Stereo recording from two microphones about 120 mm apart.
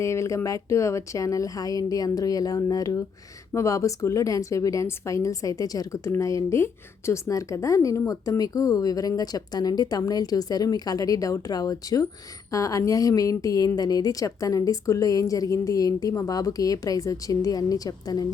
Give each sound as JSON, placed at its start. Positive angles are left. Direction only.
{"t": 0.0, "sound": "a woman's voice", "side_deg": 25}